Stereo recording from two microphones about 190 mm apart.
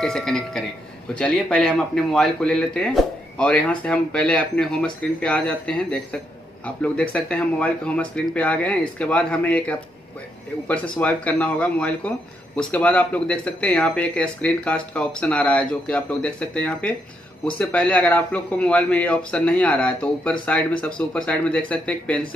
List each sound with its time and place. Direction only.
0.0 s a man's voice: 5° left (ahead or behind)